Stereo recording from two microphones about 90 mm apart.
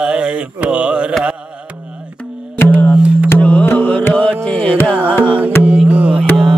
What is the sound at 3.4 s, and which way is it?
Music, 15° left (ahead or behind).